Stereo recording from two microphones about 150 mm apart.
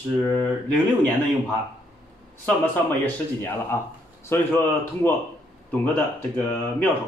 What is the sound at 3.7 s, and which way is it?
Speech, 15° left (ahead or behind).